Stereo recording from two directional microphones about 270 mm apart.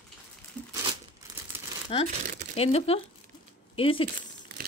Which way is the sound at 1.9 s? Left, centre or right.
Centre.